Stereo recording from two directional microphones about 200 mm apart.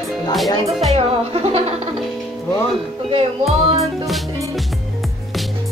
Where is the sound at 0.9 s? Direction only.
30° right (ahead or behind).